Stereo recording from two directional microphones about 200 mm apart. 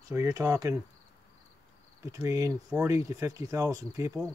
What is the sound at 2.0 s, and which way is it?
Speech, 15° right (ahead or behind).